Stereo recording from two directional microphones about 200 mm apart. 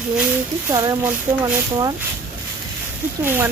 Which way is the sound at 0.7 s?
15° right (ahead or behind).